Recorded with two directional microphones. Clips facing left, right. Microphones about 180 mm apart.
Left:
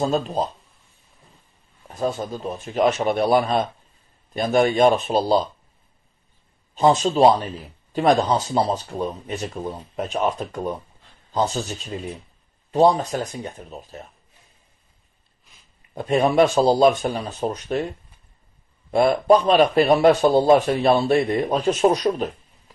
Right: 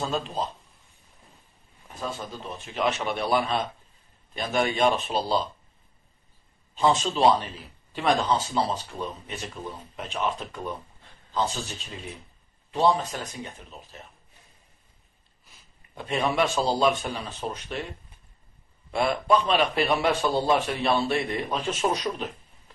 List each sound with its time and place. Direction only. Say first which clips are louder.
0.0 s speech: left 7 dB; 45° left (ahead or behind)
2.0 s speech: left 9 dB; 40° left (ahead or behind)
6.7 s a man's voice: left 6 dB; 45° left (ahead or behind)
15.9 s a man's voice: left 8 dB; 45° left (ahead or behind)
18.9 s a man's voice: left 7 dB; 40° left (ahead or behind)